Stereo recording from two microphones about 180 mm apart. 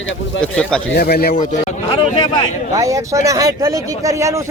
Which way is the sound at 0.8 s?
60° left (ahead or behind).